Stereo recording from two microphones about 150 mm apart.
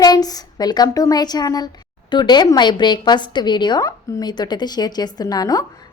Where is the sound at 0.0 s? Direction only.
25° left (ahead or behind).